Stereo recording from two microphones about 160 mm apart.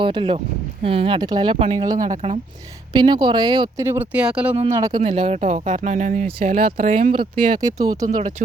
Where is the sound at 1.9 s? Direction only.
50° right (ahead or behind).